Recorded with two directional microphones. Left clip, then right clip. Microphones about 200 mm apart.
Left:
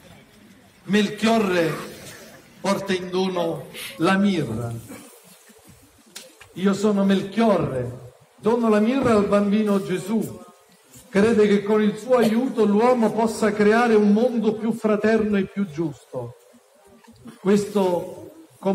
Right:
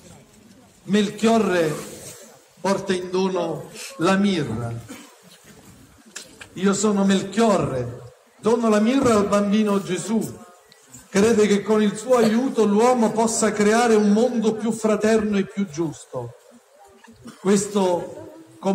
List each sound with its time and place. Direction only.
0.9 s a man's voice: 50° right (ahead or behind)
6.5 s a man's voice: 60° right (ahead or behind)
17.5 s a man's voice: 55° right (ahead or behind)